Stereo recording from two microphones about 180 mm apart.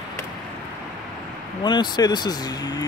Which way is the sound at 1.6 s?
25° left (ahead or behind).